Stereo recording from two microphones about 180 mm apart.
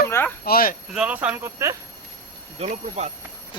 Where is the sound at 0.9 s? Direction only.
5° right (ahead or behind).